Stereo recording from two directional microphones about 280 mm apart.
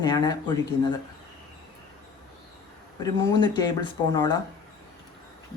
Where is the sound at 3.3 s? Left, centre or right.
Centre.